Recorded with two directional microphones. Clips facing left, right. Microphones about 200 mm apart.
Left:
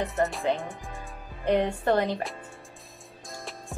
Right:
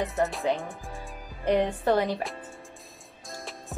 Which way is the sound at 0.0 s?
Centre (ahead or behind).